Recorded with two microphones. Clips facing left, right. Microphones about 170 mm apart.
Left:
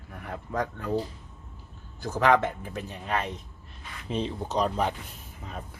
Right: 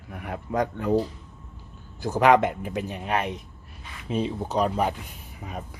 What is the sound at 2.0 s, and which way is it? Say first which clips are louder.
Speech: right 4 dB; 15° right (ahead or behind).